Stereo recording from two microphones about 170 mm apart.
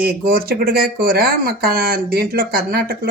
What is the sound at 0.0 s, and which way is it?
Speech, 60° right (ahead or behind).